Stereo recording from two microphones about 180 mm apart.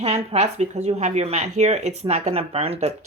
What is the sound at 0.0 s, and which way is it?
Speech, 35° right (ahead or behind).